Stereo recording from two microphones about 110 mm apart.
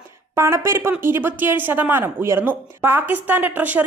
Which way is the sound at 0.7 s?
25° right (ahead or behind).